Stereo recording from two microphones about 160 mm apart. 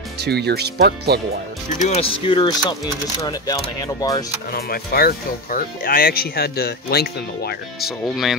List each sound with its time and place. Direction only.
0.2 s speech: 90° right
1.8 s speech: 40° left (ahead or behind)
2.7 s speech: 20° left (ahead or behind)
4.5 s speech: 75° left (ahead or behind)
7.8 s speech: centre (ahead or behind)